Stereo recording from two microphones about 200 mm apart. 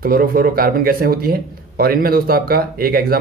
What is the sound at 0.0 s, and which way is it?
Speech, 45° right (ahead or behind).